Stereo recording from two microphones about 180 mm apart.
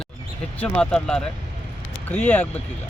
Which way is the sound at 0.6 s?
5° left (ahead or behind).